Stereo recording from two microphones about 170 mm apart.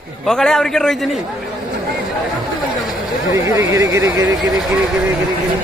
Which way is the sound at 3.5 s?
15° right (ahead or behind).